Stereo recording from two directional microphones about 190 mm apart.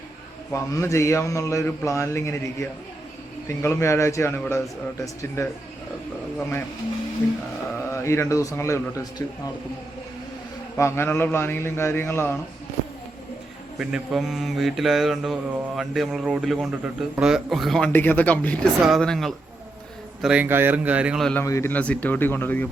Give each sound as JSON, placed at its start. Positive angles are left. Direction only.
{"t": 0.5, "sound": "a man's voice", "side_deg": 15}
{"t": 7.9, "sound": "a man's voice", "side_deg": 15}
{"t": 10.8, "sound": "a man's voice", "side_deg": 15}
{"t": 13.7, "sound": "mantra", "side_deg": -5}
{"t": 20.2, "sound": "a man's voice", "side_deg": -5}
{"t": 21.4, "sound": "a man's voice", "side_deg": 15}